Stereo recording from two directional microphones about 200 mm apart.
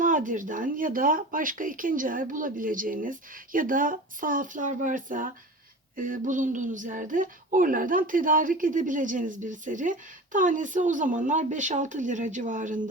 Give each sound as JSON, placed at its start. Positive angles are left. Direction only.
{"t": 0.0, "sound": "speech", "side_deg": -40}